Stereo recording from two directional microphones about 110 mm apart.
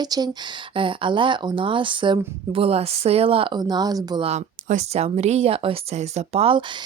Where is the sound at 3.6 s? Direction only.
40° right (ahead or behind).